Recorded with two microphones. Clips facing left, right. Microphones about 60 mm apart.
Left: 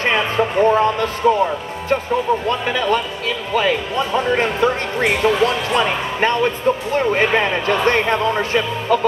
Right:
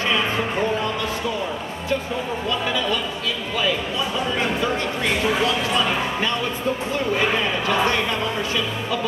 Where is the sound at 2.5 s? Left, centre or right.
Left.